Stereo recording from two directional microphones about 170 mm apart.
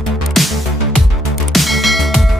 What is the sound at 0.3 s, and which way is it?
Music, centre (ahead or behind).